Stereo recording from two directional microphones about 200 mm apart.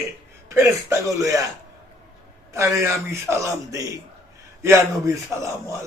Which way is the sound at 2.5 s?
15° right (ahead or behind).